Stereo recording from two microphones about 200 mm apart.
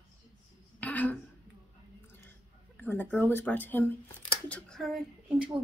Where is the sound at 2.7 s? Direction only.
10° left (ahead or behind).